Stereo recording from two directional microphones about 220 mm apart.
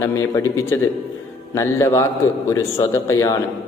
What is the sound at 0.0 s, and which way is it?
A man's voice, 15° left (ahead or behind).